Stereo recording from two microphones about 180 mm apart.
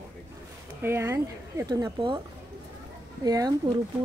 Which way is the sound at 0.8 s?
15° right (ahead or behind).